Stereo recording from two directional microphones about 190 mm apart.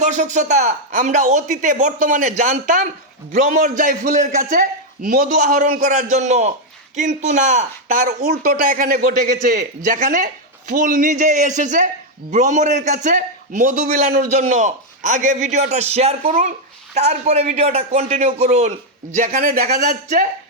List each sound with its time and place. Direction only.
0.0 s a man's voice: 40° right (ahead or behind)